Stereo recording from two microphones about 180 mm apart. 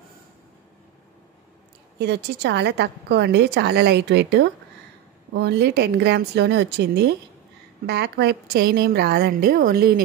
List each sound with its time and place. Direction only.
2.0 s a woman's voice: 65° right (ahead or behind)